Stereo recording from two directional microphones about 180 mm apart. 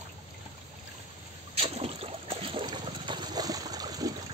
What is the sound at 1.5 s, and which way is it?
Boat, 35° right (ahead or behind).